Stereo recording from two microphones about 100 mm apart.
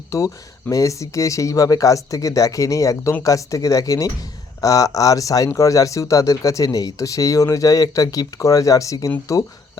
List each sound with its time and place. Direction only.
0.1 s speech: 30° left (ahead or behind)